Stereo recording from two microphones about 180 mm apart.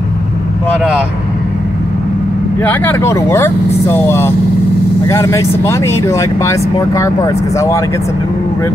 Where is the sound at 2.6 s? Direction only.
10° left (ahead or behind).